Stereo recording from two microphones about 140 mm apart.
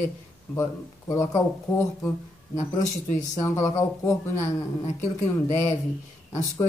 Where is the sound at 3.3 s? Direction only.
20° left (ahead or behind).